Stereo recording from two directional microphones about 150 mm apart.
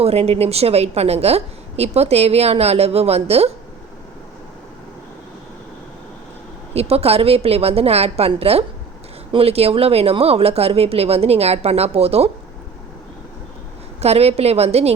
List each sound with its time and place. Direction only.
0.0 s a woman's voice: 45° right (ahead or behind)
6.7 s a woman's voice: 45° right (ahead or behind)
14.0 s a woman's voice: 45° right (ahead or behind)